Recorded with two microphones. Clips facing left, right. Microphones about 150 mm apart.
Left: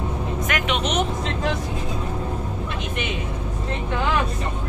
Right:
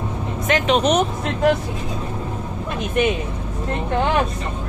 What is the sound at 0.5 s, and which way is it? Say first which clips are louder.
Speech: right 9 dB; 35° right (ahead or behind).